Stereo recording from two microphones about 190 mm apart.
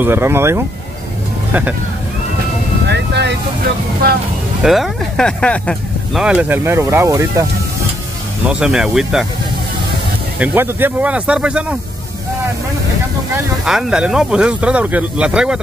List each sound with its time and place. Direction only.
0.0 s speech: 10° right (ahead or behind)
2.9 s vehicle: 60° right (ahead or behind)
4.6 s speech: centre (ahead or behind)
6.2 s speech: 10° right (ahead or behind)
8.5 s speech: 5° right (ahead or behind)
10.4 s speech: 10° right (ahead or behind)
13.7 s speech: 5° right (ahead or behind)